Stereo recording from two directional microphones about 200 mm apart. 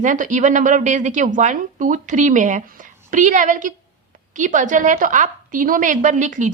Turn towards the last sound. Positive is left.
turn(degrees=-40)  # may be behind; listen again after turning